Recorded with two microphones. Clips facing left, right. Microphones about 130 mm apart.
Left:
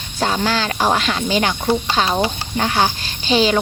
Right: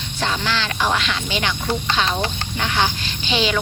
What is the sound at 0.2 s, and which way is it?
Speech, 40° left (ahead or behind).